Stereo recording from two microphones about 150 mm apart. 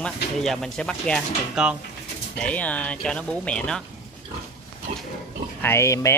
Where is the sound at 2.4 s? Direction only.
10° left (ahead or behind).